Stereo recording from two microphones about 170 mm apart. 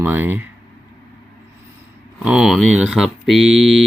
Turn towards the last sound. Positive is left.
turn(degrees=0)  # may be behind; listen again after turning